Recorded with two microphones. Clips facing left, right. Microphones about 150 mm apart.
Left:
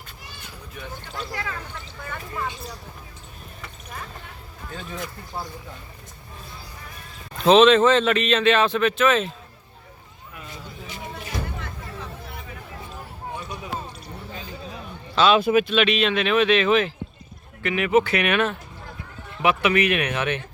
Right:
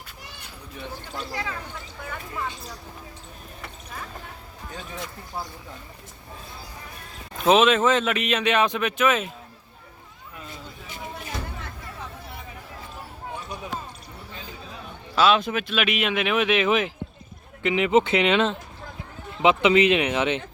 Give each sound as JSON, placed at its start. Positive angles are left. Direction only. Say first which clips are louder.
{"t": 1.1, "sound": "speech", "louder": "even", "side_deg": -20}
{"t": 7.4, "sound": "speech", "louder": "left 4 dB", "side_deg": -10}
{"t": 15.1, "sound": "a sound", "louder": "left 1 dB", "side_deg": -5}
{"t": 15.4, "sound": "speech", "louder": "left 9 dB", "side_deg": 10}
{"t": 15.7, "sound": "speech", "louder": "left 4 dB", "side_deg": -10}